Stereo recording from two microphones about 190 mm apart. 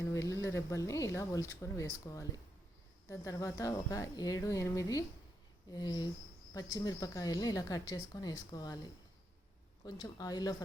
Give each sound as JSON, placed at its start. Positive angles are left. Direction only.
{"t": 0.1, "sound": "speech", "side_deg": 15}
{"t": 9.8, "sound": "speech", "side_deg": 20}